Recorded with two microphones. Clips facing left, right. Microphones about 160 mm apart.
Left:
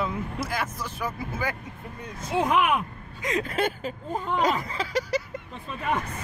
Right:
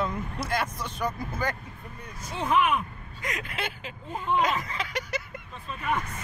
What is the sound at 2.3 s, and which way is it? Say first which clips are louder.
Speech: left 4 dB; 85° left.